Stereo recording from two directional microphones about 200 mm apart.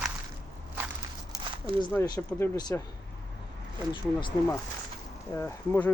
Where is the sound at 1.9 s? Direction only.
15° left (ahead or behind).